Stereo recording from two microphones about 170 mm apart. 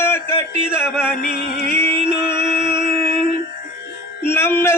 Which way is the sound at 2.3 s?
30° right (ahead or behind).